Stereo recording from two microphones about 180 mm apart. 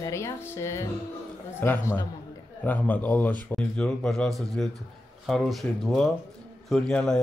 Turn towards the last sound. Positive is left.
turn(degrees=5)  # may be behind; listen again after turning